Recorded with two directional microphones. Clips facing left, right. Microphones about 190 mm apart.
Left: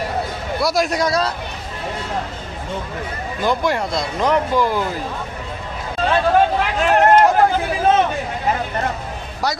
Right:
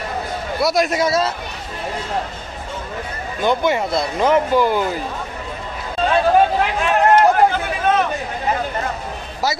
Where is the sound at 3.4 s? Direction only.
Centre (ahead or behind).